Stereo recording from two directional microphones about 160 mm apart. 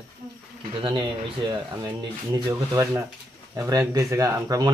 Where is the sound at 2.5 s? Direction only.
20° right (ahead or behind).